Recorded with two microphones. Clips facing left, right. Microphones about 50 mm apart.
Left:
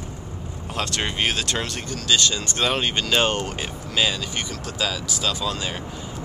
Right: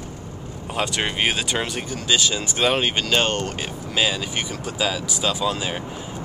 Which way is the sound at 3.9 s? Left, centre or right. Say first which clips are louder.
Right 1 dB; centre.